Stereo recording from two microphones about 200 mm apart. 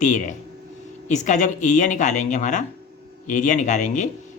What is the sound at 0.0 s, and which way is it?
Speech, 40° left (ahead or behind).